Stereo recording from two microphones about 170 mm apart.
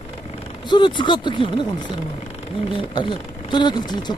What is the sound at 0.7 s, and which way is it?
Speech, 30° left (ahead or behind).